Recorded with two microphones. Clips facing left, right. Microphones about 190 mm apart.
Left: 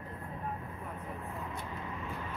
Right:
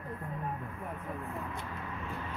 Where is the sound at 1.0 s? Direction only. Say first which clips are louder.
Right 2 dB; 20° left (ahead or behind).